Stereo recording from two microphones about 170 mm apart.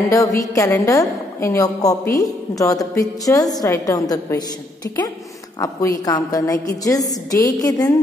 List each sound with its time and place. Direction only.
0.1 s a woman's voice: 20° left (ahead or behind)